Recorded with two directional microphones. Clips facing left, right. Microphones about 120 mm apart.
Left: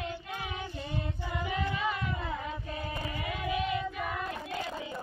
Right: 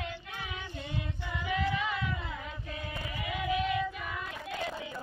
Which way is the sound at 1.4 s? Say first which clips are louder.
Right 1 dB; 40° left (ahead or behind).